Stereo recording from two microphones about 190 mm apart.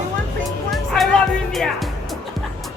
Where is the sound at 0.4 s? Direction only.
Centre (ahead or behind).